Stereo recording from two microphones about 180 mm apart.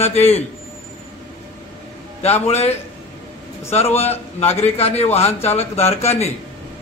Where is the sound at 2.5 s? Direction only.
35° left (ahead or behind).